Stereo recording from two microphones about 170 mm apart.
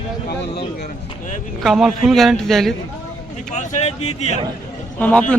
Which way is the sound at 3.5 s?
45° left (ahead or behind).